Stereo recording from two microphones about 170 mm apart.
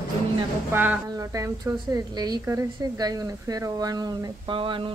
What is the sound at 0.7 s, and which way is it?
A woman's voice, 10° right (ahead or behind).